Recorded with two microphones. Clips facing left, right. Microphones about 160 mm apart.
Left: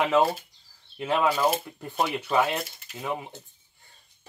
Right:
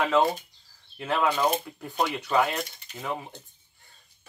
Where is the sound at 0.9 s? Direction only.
20° left (ahead or behind).